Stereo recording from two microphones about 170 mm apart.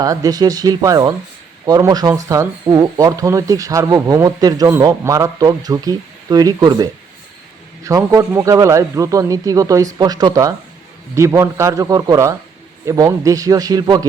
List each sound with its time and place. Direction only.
0.0 s speech: 20° right (ahead or behind)